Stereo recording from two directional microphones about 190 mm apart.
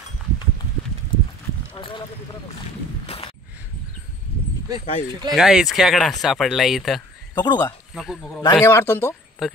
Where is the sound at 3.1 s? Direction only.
30° left (ahead or behind).